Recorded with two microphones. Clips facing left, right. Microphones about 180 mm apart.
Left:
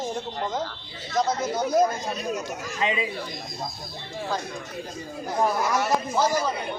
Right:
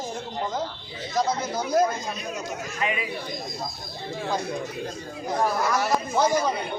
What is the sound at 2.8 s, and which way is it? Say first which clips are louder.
Speech: left 2 dB; 25° left (ahead or behind).